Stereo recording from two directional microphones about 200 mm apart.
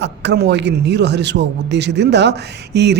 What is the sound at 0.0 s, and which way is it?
A man's voice, 60° right (ahead or behind).